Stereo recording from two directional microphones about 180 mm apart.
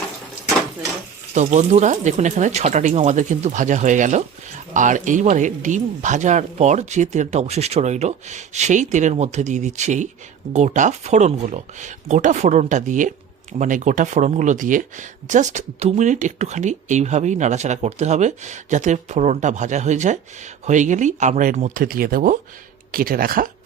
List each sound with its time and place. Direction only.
1.3 s speech: 40° right (ahead or behind)